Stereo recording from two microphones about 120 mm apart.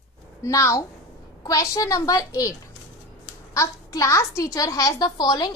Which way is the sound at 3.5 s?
30° left (ahead or behind).